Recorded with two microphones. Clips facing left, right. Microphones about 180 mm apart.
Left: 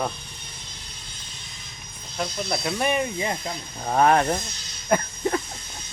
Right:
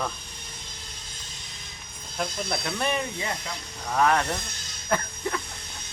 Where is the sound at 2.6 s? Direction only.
15° left (ahead or behind).